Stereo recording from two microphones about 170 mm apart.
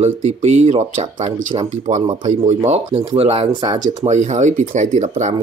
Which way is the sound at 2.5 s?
40° right (ahead or behind).